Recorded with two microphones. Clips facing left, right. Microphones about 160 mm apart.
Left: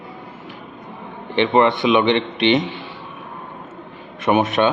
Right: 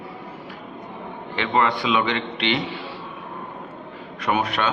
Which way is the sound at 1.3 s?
25° left (ahead or behind).